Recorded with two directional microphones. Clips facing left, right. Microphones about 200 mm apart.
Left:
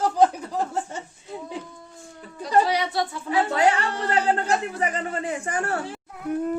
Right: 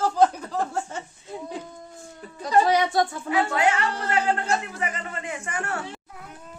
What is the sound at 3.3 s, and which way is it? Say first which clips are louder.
Speech: left 4 dB; 35° left (ahead or behind).